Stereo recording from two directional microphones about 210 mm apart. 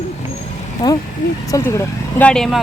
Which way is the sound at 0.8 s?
20° left (ahead or behind).